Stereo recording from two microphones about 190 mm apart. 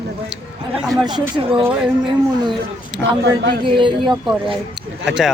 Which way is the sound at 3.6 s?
25° right (ahead or behind).